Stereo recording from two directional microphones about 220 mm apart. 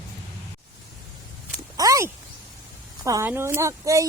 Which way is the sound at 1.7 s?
15° right (ahead or behind).